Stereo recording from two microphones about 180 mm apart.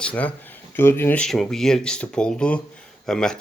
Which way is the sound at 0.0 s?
5° left (ahead or behind).